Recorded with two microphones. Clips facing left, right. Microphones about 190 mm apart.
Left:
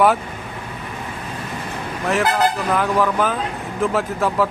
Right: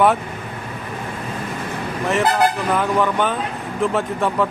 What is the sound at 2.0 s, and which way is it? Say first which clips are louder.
A man's voice: right 1 dB; centre (ahead or behind).